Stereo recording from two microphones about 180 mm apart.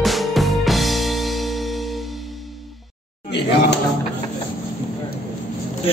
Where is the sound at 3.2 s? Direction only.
70° left (ahead or behind).